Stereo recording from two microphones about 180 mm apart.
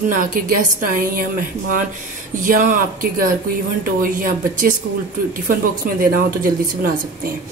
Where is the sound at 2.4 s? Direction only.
50° right (ahead or behind).